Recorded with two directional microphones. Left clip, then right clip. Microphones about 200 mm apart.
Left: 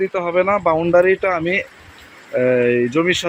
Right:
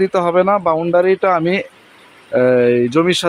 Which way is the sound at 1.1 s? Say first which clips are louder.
Right 3 dB; 20° right (ahead or behind).